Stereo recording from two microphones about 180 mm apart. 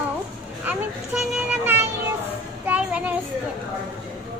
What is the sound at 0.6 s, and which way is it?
Children playing, 5° right (ahead or behind).